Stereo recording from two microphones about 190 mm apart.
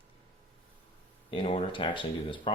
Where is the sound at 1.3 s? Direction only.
25° left (ahead or behind).